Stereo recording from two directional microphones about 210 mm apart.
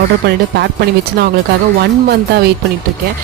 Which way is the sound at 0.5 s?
55° right (ahead or behind).